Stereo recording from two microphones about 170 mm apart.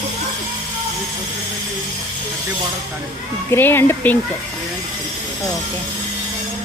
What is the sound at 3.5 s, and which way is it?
Speech, 15° left (ahead or behind).